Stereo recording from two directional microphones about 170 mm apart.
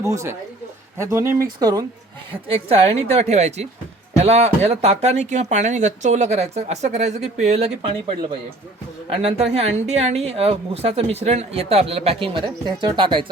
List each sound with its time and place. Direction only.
0.0 s speech: 20° right (ahead or behind)
2.3 s speech: 35° right (ahead or behind)
9.2 s speech: 35° right (ahead or behind)